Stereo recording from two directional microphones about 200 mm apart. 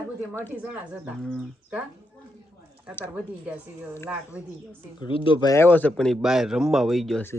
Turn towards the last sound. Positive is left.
turn(degrees=5)  # may be behind; listen again after turning